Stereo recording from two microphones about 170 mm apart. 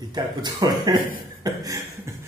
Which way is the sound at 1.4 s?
20° right (ahead or behind).